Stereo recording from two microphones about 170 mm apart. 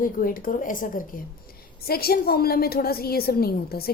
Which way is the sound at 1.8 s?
65° left (ahead or behind).